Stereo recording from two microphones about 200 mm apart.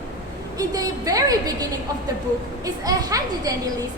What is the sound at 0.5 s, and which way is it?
A woman's voice, 15° right (ahead or behind).